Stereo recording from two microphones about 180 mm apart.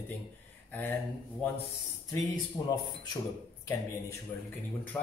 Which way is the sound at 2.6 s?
20° left (ahead or behind).